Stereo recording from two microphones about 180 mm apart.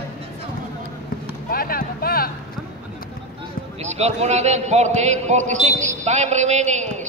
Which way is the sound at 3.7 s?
35° right (ahead or behind).